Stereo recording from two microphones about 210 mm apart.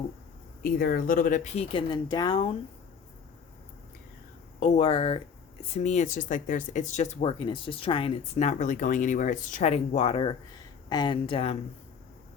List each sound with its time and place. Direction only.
0.6 s speech: 45° left (ahead or behind)
1.7 s speech: 20° left (ahead or behind)
4.6 s speech: 30° left (ahead or behind)